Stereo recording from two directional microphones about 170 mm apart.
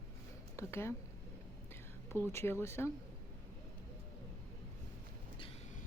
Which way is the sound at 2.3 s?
15° left (ahead or behind).